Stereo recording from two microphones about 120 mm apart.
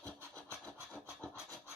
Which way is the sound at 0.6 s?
10° left (ahead or behind).